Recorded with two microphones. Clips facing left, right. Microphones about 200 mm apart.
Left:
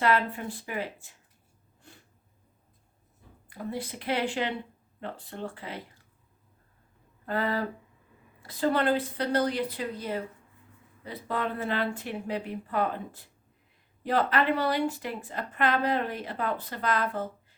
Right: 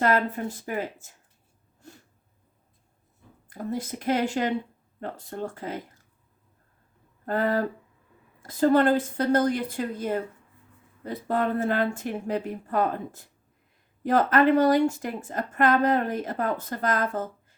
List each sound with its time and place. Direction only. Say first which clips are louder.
0.0 s a woman's voice: right 3 dB; 45° right (ahead or behind)
3.5 s a woman's voice: right 4 dB; 45° right (ahead or behind)
7.3 s a woman's voice: right 4 dB; 45° right (ahead or behind)